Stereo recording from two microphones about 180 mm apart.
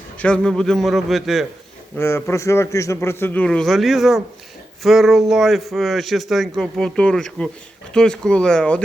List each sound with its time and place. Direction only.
0.2 s speech: 5° left (ahead or behind)
2.0 s a man's voice: 15° left (ahead or behind)